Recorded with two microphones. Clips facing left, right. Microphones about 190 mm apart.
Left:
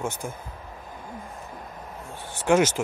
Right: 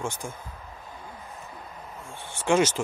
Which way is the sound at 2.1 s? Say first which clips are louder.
Left 2 dB; 40° left (ahead or behind).